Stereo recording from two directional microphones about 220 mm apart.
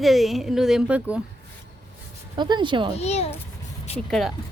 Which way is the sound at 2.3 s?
20° right (ahead or behind).